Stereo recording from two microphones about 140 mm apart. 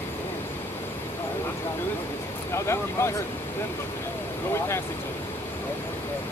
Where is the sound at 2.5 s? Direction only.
20° left (ahead or behind).